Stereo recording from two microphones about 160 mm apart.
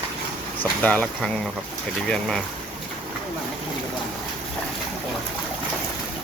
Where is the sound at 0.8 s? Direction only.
10° left (ahead or behind).